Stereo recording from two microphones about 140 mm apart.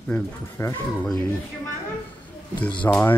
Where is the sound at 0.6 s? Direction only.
20° left (ahead or behind).